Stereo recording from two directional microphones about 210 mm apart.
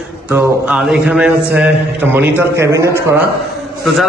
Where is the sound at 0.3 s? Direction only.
5° right (ahead or behind).